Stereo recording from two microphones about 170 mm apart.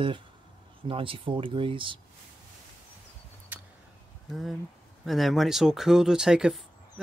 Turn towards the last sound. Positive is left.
turn(degrees=-5)  # may be behind; listen again after turning